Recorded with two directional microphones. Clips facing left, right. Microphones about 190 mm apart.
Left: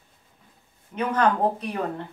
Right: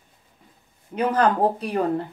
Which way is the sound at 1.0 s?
35° right (ahead or behind).